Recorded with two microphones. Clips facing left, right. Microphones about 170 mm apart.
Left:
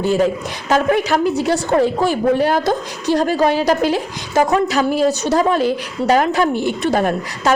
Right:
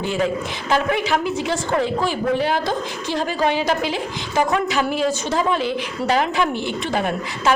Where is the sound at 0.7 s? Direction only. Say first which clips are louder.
Left 4 dB; 40° left (ahead or behind).